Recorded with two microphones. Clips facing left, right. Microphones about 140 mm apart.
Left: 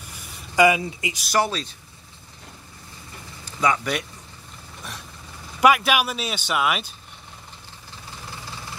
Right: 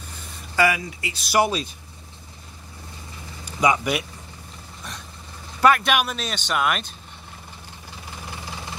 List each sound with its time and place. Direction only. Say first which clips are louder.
0.6 s speech: left 4 dB; 20° left (ahead or behind)
1.4 s speech: right 4 dB; 10° right (ahead or behind)
3.6 s speech: right 2 dB; 15° right (ahead or behind)
5.6 s speech: even; 10° left (ahead or behind)